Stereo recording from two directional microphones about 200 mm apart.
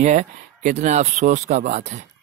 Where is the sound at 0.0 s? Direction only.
35° right (ahead or behind).